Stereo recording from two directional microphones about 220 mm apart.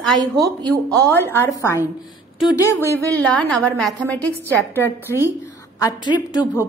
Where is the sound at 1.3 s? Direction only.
10° left (ahead or behind).